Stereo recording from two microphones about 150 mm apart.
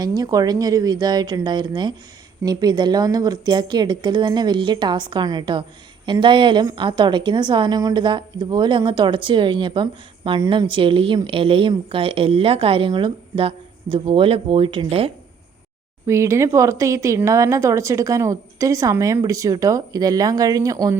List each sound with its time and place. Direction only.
0.0 s a woman's voice: 25° right (ahead or behind)
16.0 s speech: 20° right (ahead or behind)